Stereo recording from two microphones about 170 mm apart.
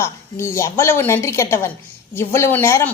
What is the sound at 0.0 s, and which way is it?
A woman's voice, 15° left (ahead or behind).